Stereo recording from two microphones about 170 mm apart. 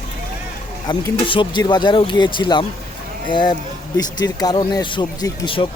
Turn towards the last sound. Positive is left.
turn(degrees=30)  # may be behind; listen again after turning